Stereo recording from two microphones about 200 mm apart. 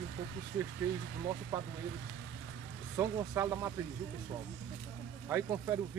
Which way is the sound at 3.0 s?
15° right (ahead or behind).